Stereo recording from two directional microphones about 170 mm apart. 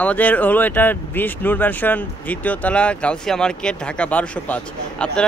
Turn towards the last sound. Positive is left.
turn(degrees=5)  # may be behind; listen again after turning